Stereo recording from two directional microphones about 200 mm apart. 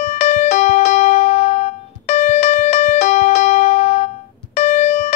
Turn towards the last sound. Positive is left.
turn(degrees=35)  # may be behind; listen again after turning